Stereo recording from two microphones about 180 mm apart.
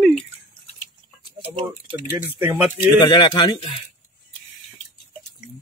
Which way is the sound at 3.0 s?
25° left (ahead or behind).